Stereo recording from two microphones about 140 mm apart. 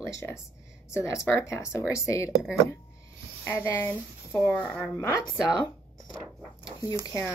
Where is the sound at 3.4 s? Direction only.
20° left (ahead or behind).